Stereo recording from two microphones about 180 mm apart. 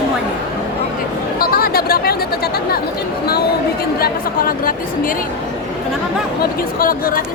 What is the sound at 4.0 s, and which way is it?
A woman's voice, 55° left (ahead or behind).